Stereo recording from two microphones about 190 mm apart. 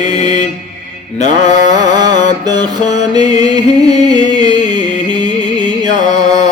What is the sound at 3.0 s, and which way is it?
Music, 20° right (ahead or behind).